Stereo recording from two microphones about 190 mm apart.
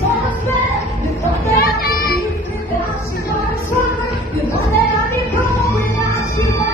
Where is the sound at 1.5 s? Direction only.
50° left (ahead or behind).